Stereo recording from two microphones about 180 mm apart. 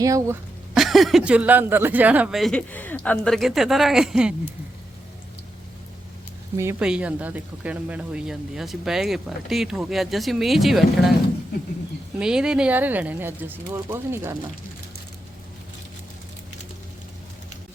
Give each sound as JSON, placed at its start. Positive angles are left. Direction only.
{"t": 0.0, "sound": "speech", "side_deg": -20}
{"t": 0.7, "sound": "speech", "side_deg": 0}
{"t": 6.6, "sound": "speech", "side_deg": -10}
{"t": 12.2, "sound": "speech", "side_deg": -5}